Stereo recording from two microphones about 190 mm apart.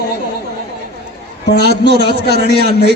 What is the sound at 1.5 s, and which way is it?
Speech, 60° left (ahead or behind).